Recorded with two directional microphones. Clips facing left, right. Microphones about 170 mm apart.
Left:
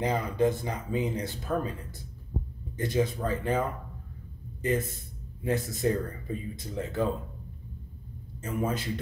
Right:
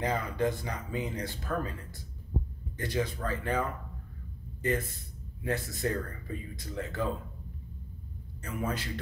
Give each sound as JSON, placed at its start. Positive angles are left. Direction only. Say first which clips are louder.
{"t": 0.0, "sound": "speech", "louder": "left 4 dB", "side_deg": 20}
{"t": 8.4, "sound": "speech", "louder": "left 4 dB", "side_deg": 20}